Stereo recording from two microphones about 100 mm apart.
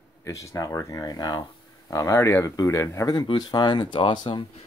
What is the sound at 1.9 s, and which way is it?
Speech, 35° left (ahead or behind).